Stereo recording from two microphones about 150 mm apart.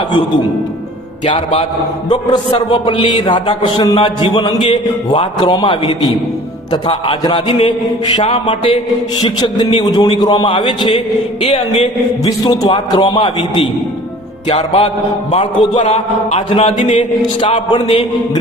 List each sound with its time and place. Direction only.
1.2 s a man's voice: 55° left (ahead or behind)
2.6 s a man's voice: 30° left (ahead or behind)
9.8 s a man's voice: 30° left (ahead or behind)
12.2 s a man's voice: 25° left (ahead or behind)